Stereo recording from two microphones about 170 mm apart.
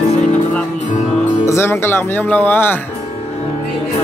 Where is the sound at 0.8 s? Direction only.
45° left (ahead or behind).